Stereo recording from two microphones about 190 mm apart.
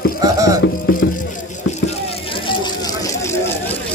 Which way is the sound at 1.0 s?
55° left (ahead or behind).